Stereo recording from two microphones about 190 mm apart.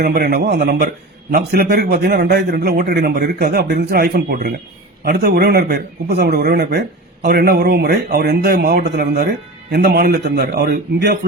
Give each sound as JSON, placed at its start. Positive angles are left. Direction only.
{"t": 0.0, "sound": "speech", "side_deg": -55}